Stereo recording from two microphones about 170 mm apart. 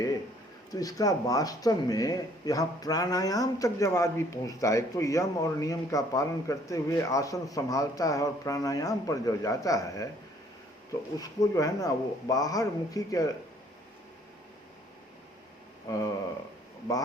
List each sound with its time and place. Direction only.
0.7 s speech: 20° left (ahead or behind)
11.2 s speech: 20° left (ahead or behind)
15.9 s speech: 20° left (ahead or behind)